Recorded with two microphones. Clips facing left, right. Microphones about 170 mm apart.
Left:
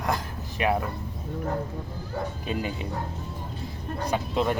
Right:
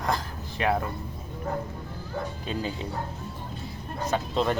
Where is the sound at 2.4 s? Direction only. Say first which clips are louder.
Left 2 dB; 15° left (ahead or behind).